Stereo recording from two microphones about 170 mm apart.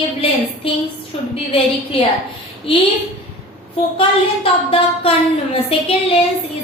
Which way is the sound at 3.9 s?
35° left (ahead or behind).